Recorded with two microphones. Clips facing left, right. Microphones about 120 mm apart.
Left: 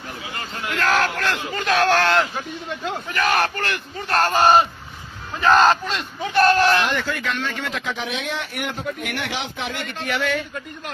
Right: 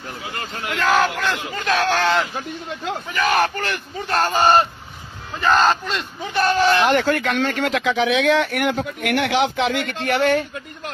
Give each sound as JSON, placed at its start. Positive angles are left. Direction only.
{"t": 0.7, "sound": "speech", "side_deg": -5}
{"t": 6.9, "sound": "speech", "side_deg": -60}
{"t": 10.1, "sound": "speech", "side_deg": -45}